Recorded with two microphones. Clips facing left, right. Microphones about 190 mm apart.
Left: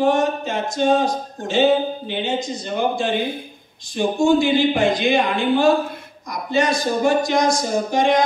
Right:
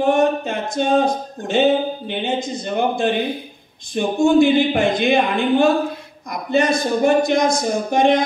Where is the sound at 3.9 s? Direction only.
55° right (ahead or behind).